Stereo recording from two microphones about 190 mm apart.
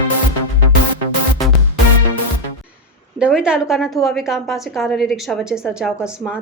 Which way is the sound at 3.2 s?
5° right (ahead or behind).